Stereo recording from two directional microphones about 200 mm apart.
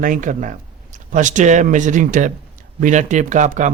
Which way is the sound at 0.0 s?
40° right (ahead or behind).